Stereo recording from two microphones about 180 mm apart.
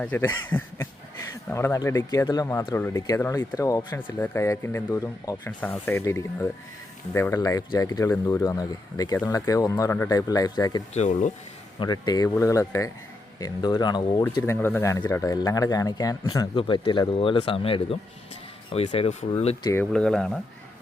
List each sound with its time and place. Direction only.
0.0 s speech: 10° left (ahead or behind)
5.5 s speech: 5° left (ahead or behind)
10.9 s speech: 40° left (ahead or behind)
11.8 s speech: 20° left (ahead or behind)
19.6 s speech: 15° left (ahead or behind)
19.9 s speech: 5° left (ahead or behind)